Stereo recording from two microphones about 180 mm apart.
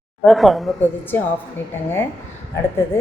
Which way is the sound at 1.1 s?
10° left (ahead or behind).